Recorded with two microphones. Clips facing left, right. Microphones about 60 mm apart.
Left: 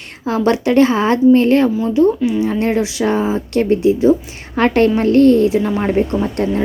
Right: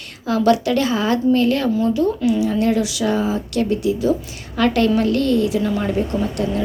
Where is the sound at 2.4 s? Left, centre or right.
Left.